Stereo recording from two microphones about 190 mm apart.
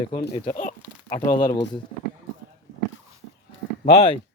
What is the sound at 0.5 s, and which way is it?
Speech, 40° left (ahead or behind).